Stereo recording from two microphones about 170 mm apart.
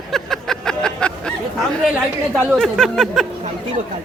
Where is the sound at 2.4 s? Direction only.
Centre (ahead or behind).